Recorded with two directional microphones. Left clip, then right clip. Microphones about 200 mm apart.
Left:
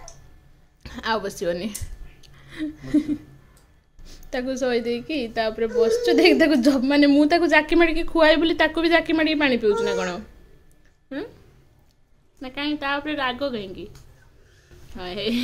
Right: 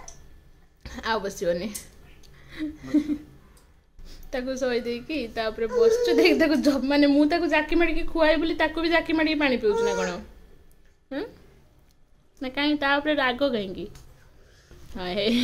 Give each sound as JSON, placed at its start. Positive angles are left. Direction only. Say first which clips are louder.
{"t": 0.8, "sound": "a woman's voice", "louder": "left 2 dB", "side_deg": 5}
{"t": 2.2, "sound": "a sound", "louder": "left 2 dB", "side_deg": 10}
{"t": 4.0, "sound": "a woman's voice", "louder": "left 3 dB", "side_deg": 10}
{"t": 12.4, "sound": "a woman's voice", "louder": "right 2 dB", "side_deg": -15}
{"t": 15.0, "sound": "a woman's voice", "louder": "right 2 dB", "side_deg": -15}